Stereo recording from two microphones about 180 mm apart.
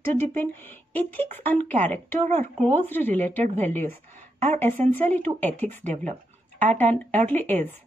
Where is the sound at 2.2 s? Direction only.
35° right (ahead or behind).